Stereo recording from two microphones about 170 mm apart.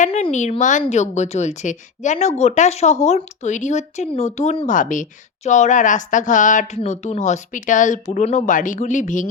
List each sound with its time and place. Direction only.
0.0 s a woman's voice: 40° left (ahead or behind)